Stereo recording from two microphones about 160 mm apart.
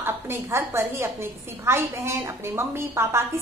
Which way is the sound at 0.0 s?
15° right (ahead or behind).